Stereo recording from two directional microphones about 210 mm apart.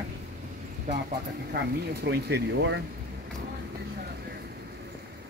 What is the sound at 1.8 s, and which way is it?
Speech, 50° right (ahead or behind).